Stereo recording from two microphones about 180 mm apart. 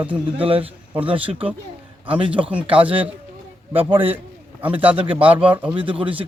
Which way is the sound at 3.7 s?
30° right (ahead or behind).